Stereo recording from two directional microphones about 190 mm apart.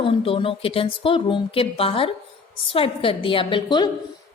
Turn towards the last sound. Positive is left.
turn(degrees=25)  # may be behind; listen again after turning